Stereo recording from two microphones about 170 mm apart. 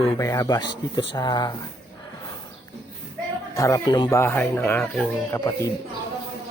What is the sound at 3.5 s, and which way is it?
Speech, 20° left (ahead or behind).